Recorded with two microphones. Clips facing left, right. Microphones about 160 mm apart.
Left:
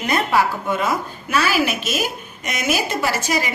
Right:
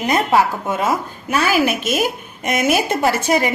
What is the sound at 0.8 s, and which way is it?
A woman's voice, 40° right (ahead or behind).